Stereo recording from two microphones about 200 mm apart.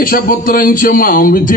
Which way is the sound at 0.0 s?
45° left (ahead or behind).